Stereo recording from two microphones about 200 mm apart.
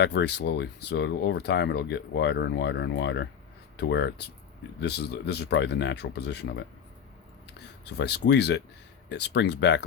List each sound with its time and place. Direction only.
0.0 s speech: 55° left (ahead or behind)